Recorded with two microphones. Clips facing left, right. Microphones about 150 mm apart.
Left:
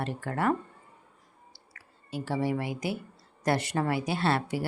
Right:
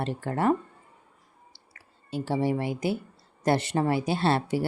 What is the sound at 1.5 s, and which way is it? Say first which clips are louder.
Clicking: left 1 dB; 25° right (ahead or behind).